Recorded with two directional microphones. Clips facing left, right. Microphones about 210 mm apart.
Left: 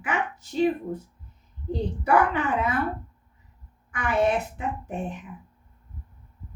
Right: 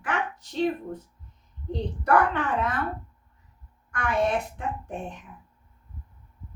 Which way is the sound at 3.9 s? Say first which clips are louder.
Left 2 dB; 5° left (ahead or behind).